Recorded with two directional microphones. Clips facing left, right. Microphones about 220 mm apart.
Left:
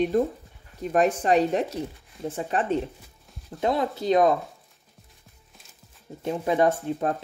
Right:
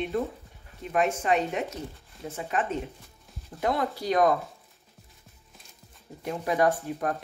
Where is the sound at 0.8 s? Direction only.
40° left (ahead or behind); by 4.3 s 25° left (ahead or behind).